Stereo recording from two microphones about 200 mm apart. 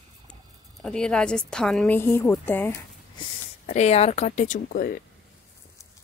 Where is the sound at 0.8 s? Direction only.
5° left (ahead or behind).